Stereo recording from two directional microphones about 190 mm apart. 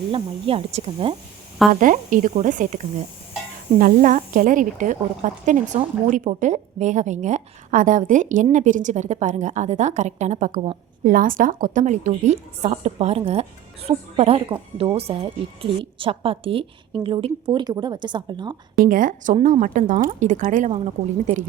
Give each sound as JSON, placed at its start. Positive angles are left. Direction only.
{"t": 0.1, "sound": "a woman's voice", "side_deg": -30}
{"t": 1.7, "sound": "a woman's voice", "side_deg": -45}
{"t": 18.9, "sound": "a woman's voice", "side_deg": -45}